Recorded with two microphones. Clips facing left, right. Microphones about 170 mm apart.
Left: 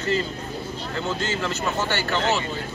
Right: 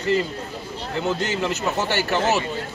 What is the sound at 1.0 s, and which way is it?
A man's voice, 15° right (ahead or behind).